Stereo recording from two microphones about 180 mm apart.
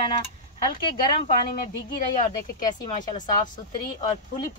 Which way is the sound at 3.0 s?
45° left (ahead or behind).